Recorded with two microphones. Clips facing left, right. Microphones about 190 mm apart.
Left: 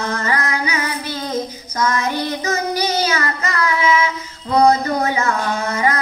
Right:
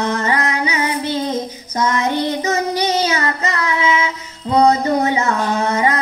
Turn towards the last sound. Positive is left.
turn(degrees=-25)  # may be behind; listen again after turning